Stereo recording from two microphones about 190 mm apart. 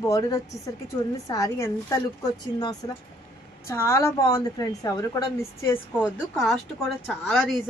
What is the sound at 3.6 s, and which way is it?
A woman's voice, 15° left (ahead or behind).